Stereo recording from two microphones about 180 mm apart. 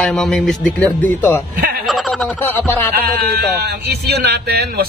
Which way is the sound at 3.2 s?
60° right (ahead or behind).